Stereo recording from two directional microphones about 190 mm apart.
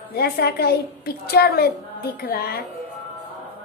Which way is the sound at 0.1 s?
55° left (ahead or behind).